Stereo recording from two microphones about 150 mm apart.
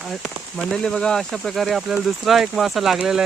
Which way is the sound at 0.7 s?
5° left (ahead or behind).